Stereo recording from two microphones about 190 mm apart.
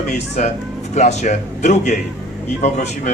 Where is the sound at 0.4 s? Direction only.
40° left (ahead or behind).